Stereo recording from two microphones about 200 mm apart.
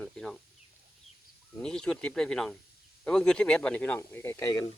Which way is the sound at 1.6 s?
5° left (ahead or behind).